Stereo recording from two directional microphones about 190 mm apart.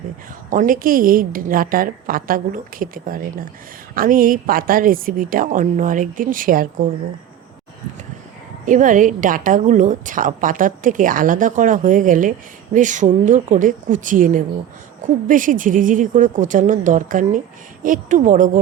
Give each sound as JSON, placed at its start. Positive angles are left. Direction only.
{"t": 0.5, "sound": "a woman's voice", "side_deg": -45}
{"t": 8.6, "sound": "a woman's voice", "side_deg": -45}